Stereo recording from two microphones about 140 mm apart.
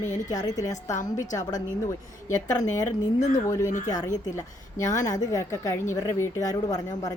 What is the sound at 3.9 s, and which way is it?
A woman's voice, 25° left (ahead or behind).